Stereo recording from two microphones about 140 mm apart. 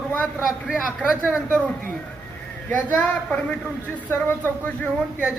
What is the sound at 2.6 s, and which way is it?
A woman's voice, 10° left (ahead or behind).